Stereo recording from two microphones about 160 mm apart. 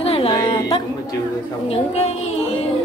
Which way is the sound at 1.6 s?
40° left (ahead or behind).